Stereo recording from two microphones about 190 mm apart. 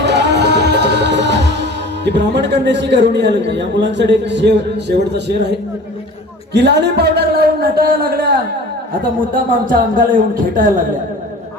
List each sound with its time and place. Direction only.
0.0 s music: 65° right (ahead or behind)
2.0 s a man's voice: 65° right (ahead or behind)
9.3 s a man's voice: 45° right (ahead or behind)